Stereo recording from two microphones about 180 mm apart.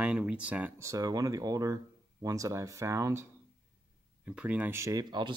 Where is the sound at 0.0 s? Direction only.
5° right (ahead or behind).